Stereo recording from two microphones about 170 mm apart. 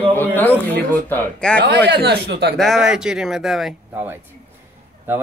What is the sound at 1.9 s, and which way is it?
Speech, 85° right.